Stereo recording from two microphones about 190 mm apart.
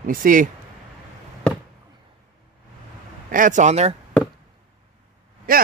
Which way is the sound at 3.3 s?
45° right (ahead or behind).